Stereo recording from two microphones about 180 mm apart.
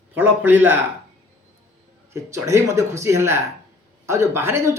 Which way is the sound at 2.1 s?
15° right (ahead or behind).